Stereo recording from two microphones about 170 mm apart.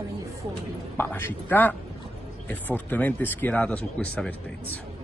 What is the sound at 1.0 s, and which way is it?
Speech, 15° left (ahead or behind).